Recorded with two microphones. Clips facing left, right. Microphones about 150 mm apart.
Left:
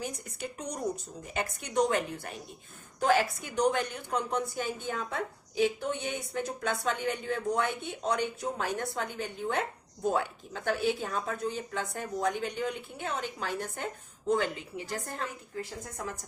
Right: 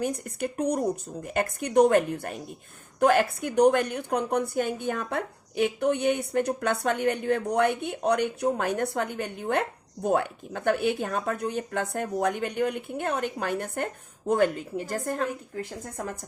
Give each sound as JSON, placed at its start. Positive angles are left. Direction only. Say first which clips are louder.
{"t": 0.0, "sound": "a woman's voice", "louder": "right 9 dB", "side_deg": -55}